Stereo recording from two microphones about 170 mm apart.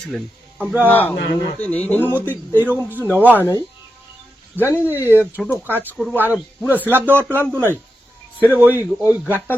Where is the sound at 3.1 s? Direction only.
10° right (ahead or behind).